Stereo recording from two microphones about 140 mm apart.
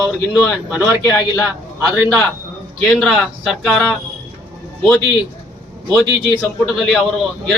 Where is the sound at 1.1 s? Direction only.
25° left (ahead or behind).